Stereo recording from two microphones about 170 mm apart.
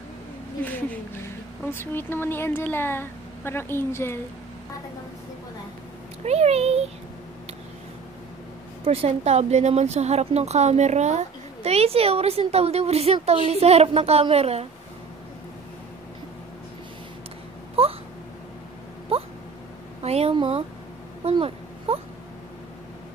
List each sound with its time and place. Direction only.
0.6 s a woman's voice: 10° left (ahead or behind)
6.2 s a woman's voice: 40° right (ahead or behind)
8.8 s a woman's voice: 35° right (ahead or behind)
17.8 s a sound: 35° right (ahead or behind)
19.1 s hiccup: 35° right (ahead or behind)
20.0 s a sound: 35° right (ahead or behind)
21.2 s baby cry: 35° right (ahead or behind)